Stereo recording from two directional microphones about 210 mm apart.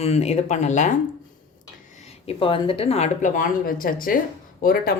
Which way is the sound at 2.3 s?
25° left (ahead or behind).